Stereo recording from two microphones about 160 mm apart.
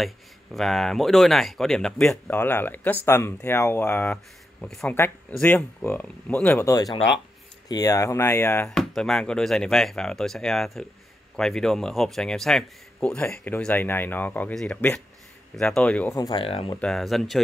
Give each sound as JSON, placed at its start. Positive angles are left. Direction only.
{"t": 0.0, "sound": "speech", "side_deg": 0}
{"t": 8.6, "sound": "a man's voice", "side_deg": 5}
{"t": 16.1, "sound": "speech", "side_deg": 25}
{"t": 16.8, "sound": "a man's voice", "side_deg": 0}